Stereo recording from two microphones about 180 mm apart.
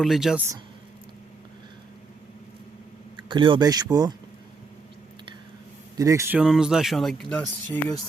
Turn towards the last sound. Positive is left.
turn(degrees=10)  # may be behind; listen again after turning